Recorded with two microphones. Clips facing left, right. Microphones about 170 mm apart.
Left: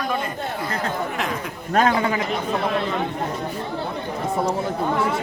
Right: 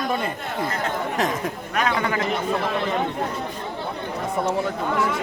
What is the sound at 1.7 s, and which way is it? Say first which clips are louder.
Speech: left 5 dB; 30° left (ahead or behind).